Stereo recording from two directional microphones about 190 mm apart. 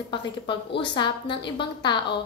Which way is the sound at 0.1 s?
25° left (ahead or behind).